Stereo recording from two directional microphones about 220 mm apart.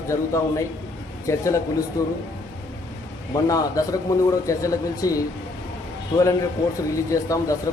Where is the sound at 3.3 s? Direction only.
15° left (ahead or behind).